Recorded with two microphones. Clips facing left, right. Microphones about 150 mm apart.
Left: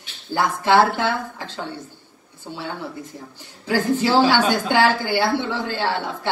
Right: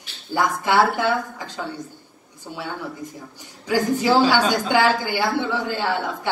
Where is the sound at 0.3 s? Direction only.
10° right (ahead or behind).